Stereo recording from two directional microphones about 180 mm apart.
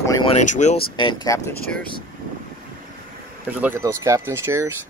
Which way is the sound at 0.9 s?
25° left (ahead or behind).